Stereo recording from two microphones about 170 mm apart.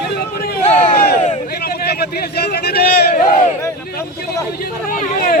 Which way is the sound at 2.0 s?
70° left (ahead or behind).